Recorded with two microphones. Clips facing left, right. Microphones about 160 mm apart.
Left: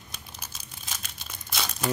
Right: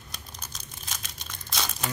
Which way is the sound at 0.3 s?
5° left (ahead or behind).